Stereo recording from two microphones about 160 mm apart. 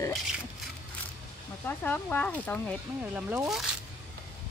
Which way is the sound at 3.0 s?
10° right (ahead or behind).